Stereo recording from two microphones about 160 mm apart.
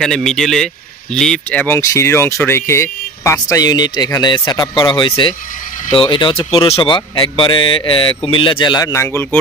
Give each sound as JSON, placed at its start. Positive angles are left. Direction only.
{"t": 0.0, "sound": "speech", "side_deg": 0}
{"t": 1.8, "sound": "speech", "side_deg": 20}